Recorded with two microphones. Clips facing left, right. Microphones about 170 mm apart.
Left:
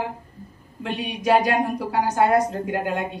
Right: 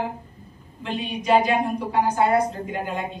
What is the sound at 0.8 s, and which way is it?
Speech, 75° left (ahead or behind).